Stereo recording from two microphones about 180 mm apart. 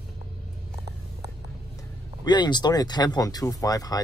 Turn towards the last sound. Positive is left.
turn(degrees=20)  # may be behind; listen again after turning